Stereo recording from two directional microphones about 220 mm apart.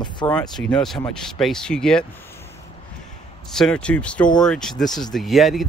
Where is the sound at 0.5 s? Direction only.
5° left (ahead or behind).